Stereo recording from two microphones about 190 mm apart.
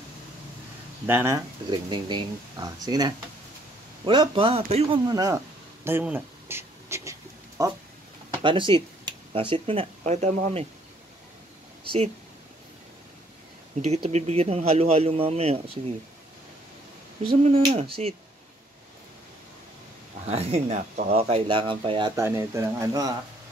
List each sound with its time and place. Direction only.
1.0 s speech: 10° right (ahead or behind)
5.9 s writing: 10° right (ahead or behind)
8.4 s speech: 25° right (ahead or behind)
13.7 s speech: 35° right (ahead or behind)
17.4 s speech: 25° right (ahead or behind)
20.2 s speech: 30° right (ahead or behind)
22.1 s speech: 15° right (ahead or behind)